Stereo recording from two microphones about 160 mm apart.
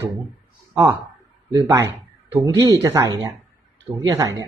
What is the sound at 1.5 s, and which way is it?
Speech, 20° right (ahead or behind).